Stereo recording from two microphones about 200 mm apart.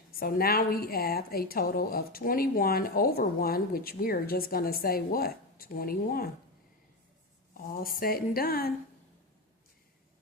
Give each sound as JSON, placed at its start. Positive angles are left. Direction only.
{"t": 0.2, "sound": "a woman's voice", "side_deg": 50}
{"t": 7.5, "sound": "a woman's voice", "side_deg": 45}